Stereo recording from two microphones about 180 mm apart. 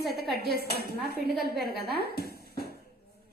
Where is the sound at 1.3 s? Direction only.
60° right (ahead or behind).